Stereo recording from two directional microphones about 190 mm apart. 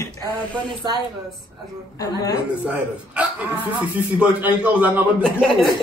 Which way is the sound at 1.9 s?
20° left (ahead or behind).